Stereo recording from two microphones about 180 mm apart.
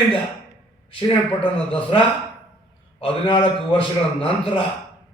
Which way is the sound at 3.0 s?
30° left (ahead or behind).